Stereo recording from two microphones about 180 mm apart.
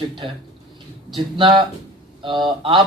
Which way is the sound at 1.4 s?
25° right (ahead or behind).